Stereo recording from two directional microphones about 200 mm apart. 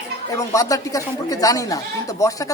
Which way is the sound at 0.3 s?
15° left (ahead or behind).